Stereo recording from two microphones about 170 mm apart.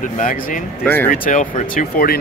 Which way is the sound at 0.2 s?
50° left (ahead or behind).